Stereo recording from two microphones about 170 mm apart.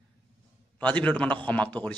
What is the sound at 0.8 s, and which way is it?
A man's voice, 10° left (ahead or behind).